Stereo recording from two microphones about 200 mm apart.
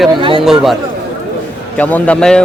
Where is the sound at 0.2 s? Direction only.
25° right (ahead or behind).